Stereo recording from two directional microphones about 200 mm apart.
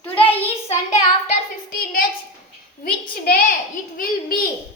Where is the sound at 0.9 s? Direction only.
40° left (ahead or behind).